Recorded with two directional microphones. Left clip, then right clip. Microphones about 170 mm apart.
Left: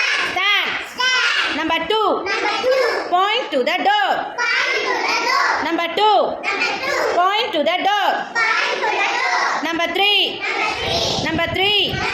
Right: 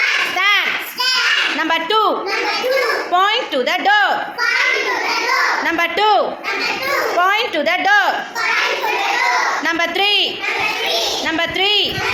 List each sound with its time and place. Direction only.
1.7 s a man's voice: 5° left (ahead or behind)
6.0 s a man's voice: 5° left (ahead or behind)
10.0 s a man's voice: 5° left (ahead or behind)
11.6 s a man's voice: 5° left (ahead or behind)